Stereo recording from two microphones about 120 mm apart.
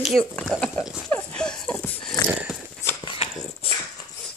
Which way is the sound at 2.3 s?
10° right (ahead or behind).